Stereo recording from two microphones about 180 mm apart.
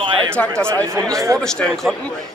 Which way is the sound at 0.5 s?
15° right (ahead or behind).